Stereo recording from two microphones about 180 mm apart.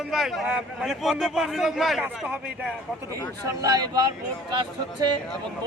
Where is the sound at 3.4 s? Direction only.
20° right (ahead or behind).